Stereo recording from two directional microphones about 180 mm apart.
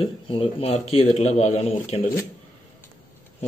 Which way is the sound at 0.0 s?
30° left (ahead or behind).